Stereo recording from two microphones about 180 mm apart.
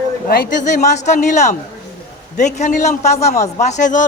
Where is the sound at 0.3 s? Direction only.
50° left (ahead or behind).